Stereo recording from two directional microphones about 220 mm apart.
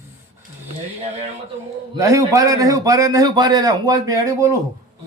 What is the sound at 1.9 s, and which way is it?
A man's voice, 15° right (ahead or behind).